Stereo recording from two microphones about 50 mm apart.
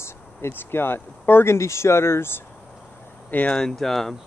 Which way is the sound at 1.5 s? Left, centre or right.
Left.